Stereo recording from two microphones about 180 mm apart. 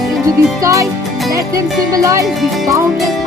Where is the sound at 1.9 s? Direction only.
20° right (ahead or behind).